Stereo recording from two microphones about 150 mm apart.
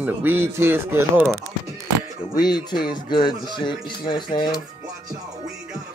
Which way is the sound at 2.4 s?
30° left (ahead or behind).